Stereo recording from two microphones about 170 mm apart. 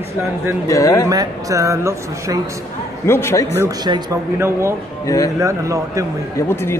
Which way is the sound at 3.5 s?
25° right (ahead or behind).